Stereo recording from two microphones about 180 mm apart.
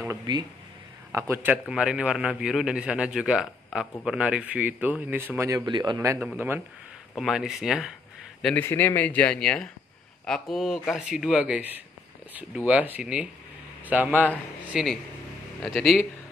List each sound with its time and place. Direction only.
0.1 s a man's voice: 25° right (ahead or behind)
5.7 s speech: 25° right (ahead or behind)
6.1 s a man's voice: 5° right (ahead or behind)